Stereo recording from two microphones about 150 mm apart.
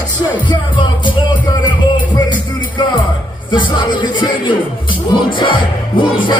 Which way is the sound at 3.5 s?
30° left (ahead or behind).